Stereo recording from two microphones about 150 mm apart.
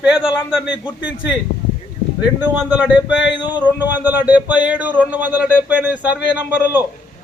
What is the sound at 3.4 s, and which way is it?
Speech, 30° left (ahead or behind).